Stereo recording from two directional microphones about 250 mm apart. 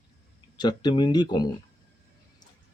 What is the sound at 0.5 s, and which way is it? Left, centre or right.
Speech, centre.